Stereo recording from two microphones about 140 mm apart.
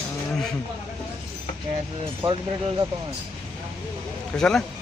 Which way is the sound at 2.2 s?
35° right (ahead or behind).